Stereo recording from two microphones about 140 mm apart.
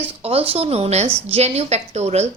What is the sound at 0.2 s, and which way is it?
A woman's voice, 45° right (ahead or behind).